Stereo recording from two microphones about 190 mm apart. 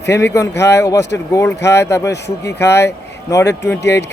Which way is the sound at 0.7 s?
15° left (ahead or behind).